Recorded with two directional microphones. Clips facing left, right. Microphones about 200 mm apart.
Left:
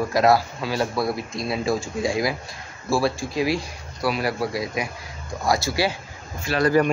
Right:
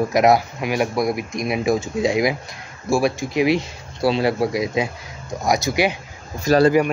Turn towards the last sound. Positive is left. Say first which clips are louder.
# right 8 dB
turn(degrees=-40)  # may be behind; listen again after turning